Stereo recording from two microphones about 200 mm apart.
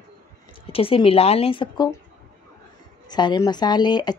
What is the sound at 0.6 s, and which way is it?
Speech, 25° left (ahead or behind).